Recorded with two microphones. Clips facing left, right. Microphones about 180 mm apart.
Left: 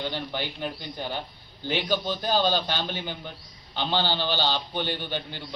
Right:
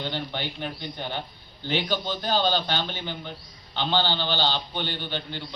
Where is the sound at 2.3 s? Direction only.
10° left (ahead or behind).